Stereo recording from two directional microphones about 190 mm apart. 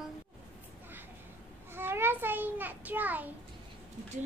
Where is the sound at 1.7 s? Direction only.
10° right (ahead or behind).